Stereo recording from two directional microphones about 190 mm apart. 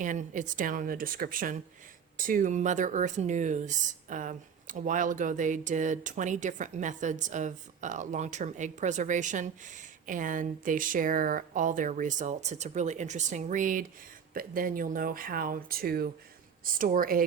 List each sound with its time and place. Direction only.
0.0 s speech: 40° right (ahead or behind)